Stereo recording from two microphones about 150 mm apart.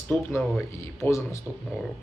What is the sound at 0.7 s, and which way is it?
Speech, 20° left (ahead or behind).